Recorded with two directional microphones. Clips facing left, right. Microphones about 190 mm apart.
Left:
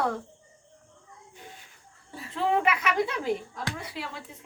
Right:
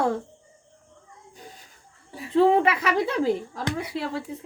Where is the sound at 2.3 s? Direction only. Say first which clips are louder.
Right 7 dB; 30° right (ahead or behind).